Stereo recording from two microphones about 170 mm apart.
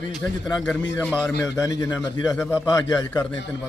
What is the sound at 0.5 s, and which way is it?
Speech, 5° left (ahead or behind).